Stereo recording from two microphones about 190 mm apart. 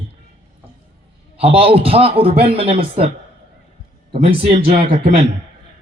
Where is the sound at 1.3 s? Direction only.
30° right (ahead or behind).